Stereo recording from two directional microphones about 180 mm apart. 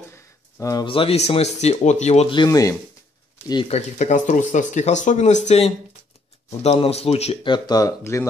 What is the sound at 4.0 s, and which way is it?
Speech, 45° left (ahead or behind).